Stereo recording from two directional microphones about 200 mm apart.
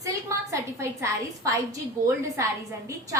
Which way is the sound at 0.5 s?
15° right (ahead or behind).